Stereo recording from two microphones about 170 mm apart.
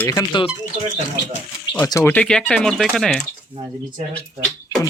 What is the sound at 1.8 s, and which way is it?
Speech, 20° left (ahead or behind).